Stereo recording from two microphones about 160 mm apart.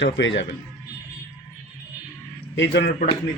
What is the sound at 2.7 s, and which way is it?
Speech, 90° left.